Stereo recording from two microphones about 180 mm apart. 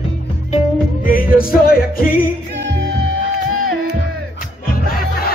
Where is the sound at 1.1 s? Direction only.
50° left (ahead or behind).